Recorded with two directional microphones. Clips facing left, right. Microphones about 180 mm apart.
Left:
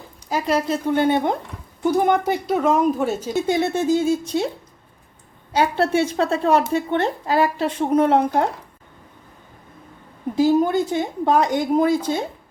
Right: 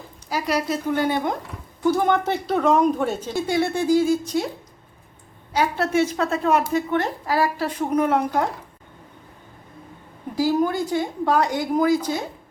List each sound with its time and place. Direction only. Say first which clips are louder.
0.3 s speech: left 3 dB; 25° left (ahead or behind)
1.8 s speech: left 2 dB; 15° left (ahead or behind)
3.3 s speech: left 2 dB; 20° left (ahead or behind)
5.5 s speech: left 2 dB; 30° left (ahead or behind)
10.3 s speech: left 4 dB; 25° left (ahead or behind)